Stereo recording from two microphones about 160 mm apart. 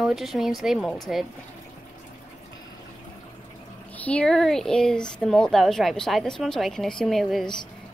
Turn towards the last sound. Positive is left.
turn(degrees=0)  # may be behind; listen again after turning